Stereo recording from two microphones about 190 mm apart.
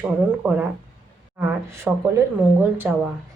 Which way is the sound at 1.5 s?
15° right (ahead or behind).